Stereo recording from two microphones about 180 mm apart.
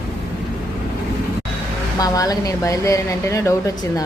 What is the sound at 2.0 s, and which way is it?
A woman's voice, 20° left (ahead or behind).